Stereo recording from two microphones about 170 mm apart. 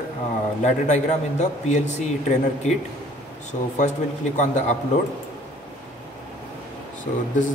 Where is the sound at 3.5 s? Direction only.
45° left (ahead or behind).